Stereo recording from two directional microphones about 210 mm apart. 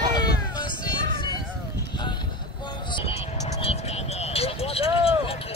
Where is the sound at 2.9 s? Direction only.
30° left (ahead or behind).